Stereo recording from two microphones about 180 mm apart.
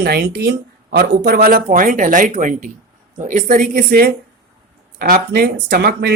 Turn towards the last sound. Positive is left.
turn(degrees=-65)  # may be behind; listen again after turning